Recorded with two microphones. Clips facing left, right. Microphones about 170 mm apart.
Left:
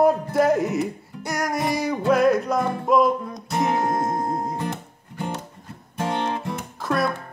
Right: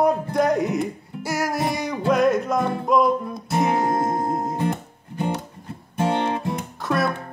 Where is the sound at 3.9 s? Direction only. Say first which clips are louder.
Right 2 dB; 25° right (ahead or behind).